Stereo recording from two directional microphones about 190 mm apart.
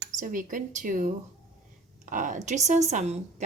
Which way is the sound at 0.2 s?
45° right (ahead or behind).